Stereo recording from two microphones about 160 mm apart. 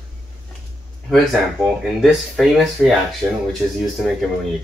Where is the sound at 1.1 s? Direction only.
5° left (ahead or behind).